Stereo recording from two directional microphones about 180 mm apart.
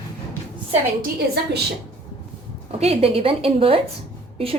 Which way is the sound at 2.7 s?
35° right (ahead or behind).